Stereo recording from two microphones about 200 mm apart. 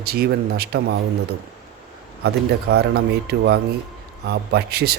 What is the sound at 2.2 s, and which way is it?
A man's voice, 55° right (ahead or behind).